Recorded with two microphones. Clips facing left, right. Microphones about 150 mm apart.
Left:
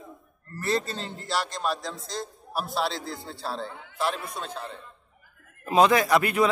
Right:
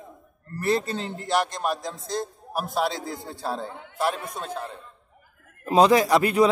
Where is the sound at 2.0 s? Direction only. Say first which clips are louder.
Right 5 dB; 50° right (ahead or behind).